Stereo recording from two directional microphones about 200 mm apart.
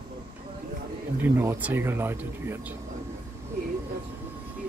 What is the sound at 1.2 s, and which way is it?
Speech, 10° right (ahead or behind).